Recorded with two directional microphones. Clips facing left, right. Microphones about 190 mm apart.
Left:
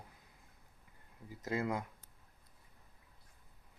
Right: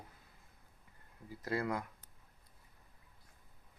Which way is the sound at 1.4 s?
20° left (ahead or behind).